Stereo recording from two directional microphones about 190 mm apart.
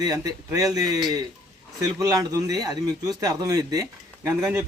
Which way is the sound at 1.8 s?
20° right (ahead or behind).